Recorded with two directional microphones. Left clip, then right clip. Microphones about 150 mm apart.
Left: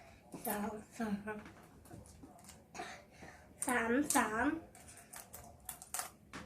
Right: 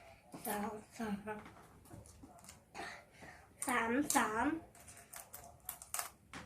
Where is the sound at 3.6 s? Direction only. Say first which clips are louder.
Left 1 dB; 5° right (ahead or behind).